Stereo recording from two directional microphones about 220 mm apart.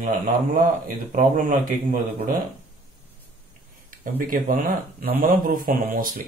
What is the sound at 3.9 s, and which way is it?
Speech, 40° right (ahead or behind).